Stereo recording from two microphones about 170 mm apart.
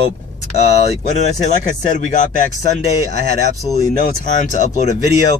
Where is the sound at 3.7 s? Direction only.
45° left (ahead or behind).